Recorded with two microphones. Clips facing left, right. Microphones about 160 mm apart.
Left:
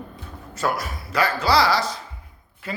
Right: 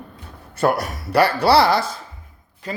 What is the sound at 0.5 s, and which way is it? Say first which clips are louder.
Speech: right 6 dB; 60° right (ahead or behind).